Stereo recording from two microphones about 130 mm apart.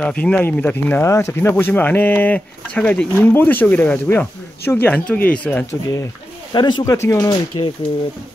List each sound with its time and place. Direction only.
0.0 s speech: 10° left (ahead or behind)
6.5 s speech: 35° left (ahead or behind)
6.8 s speech: 25° left (ahead or behind)